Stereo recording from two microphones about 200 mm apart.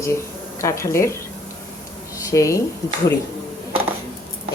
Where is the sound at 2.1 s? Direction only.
15° left (ahead or behind).